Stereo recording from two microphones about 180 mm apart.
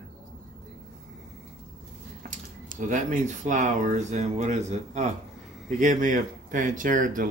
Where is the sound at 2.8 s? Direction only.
45° right (ahead or behind).